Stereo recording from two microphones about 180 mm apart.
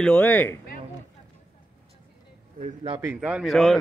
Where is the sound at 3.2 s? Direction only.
5° right (ahead or behind).